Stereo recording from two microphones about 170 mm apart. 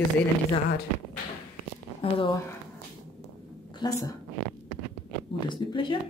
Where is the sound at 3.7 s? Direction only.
25° left (ahead or behind).